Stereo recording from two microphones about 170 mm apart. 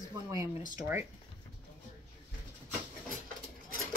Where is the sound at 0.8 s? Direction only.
15° right (ahead or behind).